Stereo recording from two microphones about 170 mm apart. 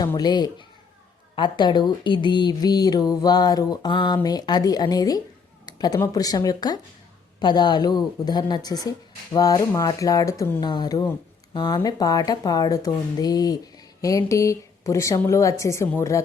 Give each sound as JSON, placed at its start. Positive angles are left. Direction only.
{"t": 0.0, "sound": "speech", "side_deg": 25}